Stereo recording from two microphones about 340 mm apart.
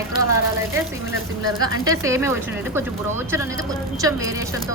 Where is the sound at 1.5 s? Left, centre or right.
Centre.